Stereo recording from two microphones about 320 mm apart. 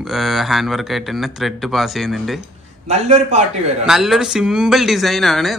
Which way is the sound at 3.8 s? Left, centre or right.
Centre.